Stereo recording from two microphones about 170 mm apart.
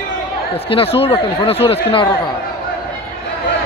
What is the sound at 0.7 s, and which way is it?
Speech, 35° left (ahead or behind).